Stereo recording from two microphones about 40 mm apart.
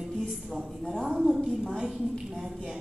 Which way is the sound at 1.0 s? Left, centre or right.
Centre.